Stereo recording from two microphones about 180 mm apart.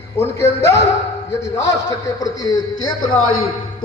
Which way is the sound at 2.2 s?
20° left (ahead or behind).